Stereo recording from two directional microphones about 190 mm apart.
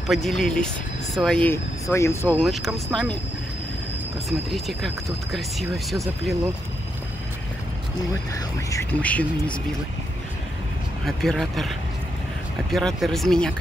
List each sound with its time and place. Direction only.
0.1 s speech: centre (ahead or behind)
2.4 s speech: centre (ahead or behind)
4.3 s speech: centre (ahead or behind)
8.4 s speech: 15° left (ahead or behind)
11.1 s speech: centre (ahead or behind)
12.7 s speech: centre (ahead or behind)